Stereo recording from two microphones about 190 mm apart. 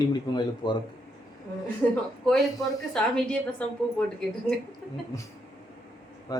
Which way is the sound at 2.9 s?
5° left (ahead or behind).